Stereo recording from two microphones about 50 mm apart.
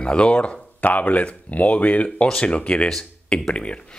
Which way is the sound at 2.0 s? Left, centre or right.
Centre.